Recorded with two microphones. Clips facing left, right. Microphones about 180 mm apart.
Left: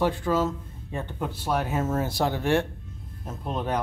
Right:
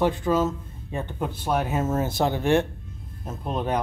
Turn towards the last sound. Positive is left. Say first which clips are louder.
# right 2 dB
turn(degrees=-20)  # may be behind; listen again after turning